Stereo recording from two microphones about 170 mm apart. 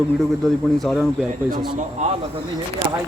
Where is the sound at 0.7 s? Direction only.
Centre (ahead or behind).